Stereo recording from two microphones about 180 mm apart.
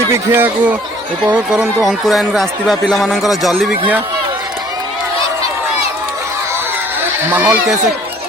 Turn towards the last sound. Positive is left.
turn(degrees=-10)  # may be behind; listen again after turning